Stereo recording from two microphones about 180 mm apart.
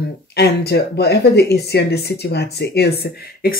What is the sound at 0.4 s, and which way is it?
Speech, 65° left (ahead or behind).